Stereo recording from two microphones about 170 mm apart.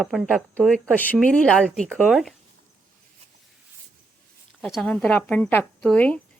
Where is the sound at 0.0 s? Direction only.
Centre (ahead or behind).